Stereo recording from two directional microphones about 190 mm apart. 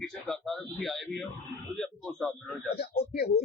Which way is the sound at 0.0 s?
Centre (ahead or behind).